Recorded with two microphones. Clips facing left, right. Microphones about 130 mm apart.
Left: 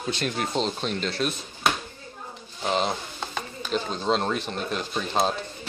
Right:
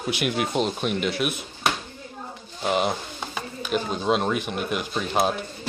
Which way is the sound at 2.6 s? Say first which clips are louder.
Right 2 dB; 10° right (ahead or behind).